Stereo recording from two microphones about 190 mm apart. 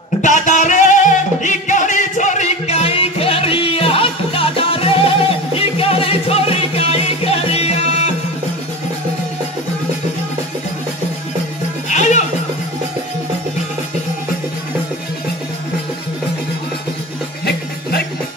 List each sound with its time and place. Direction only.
0.2 s music: 40° left (ahead or behind)
11.9 s music: 40° left (ahead or behind)